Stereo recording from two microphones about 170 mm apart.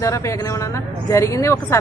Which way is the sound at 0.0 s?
20° left (ahead or behind).